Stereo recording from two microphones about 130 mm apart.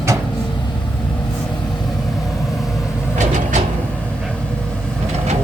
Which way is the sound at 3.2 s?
65° right (ahead or behind).